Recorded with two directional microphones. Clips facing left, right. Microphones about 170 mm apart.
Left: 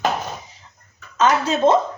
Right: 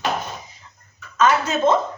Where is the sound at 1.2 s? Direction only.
35° left (ahead or behind).